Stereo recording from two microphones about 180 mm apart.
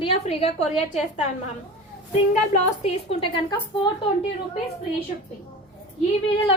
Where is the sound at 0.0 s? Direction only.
35° left (ahead or behind).